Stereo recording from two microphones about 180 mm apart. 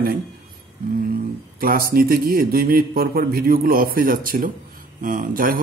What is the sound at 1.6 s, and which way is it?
A man's voice, 55° right (ahead or behind).